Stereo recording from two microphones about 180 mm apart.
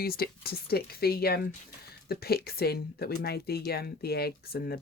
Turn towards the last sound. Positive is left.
turn(degrees=60)  # may be behind; listen again after turning